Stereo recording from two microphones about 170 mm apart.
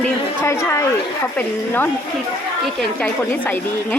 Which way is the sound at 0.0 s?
15° left (ahead or behind).